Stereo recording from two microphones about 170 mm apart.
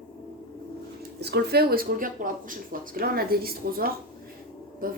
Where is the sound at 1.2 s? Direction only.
70° right (ahead or behind).